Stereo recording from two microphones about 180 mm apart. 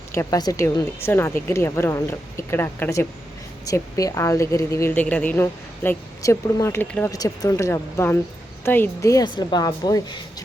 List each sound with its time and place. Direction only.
0.1 s a woman's voice: 15° left (ahead or behind)